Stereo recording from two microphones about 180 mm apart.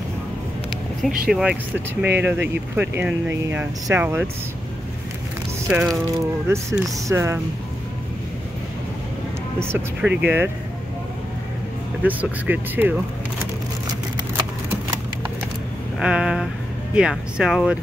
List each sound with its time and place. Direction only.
1.3 s speech: 5° right (ahead or behind)
5.7 s speech: 5° right (ahead or behind)
6.4 s speech: 15° right (ahead or behind)
9.6 s speech: 10° right (ahead or behind)
12.0 s speech: 10° right (ahead or behind)
16.0 s speech: 5° right (ahead or behind)